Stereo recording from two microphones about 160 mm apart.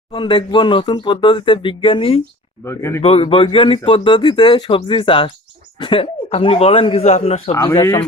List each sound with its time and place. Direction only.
0.1 s speech: 30° left (ahead or behind)
2.6 s speech: 15° left (ahead or behind)
3.0 s speech: 40° left (ahead or behind)
7.5 s speech: 15° left (ahead or behind)